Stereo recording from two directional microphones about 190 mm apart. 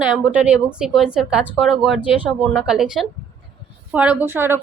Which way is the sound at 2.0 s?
25° left (ahead or behind).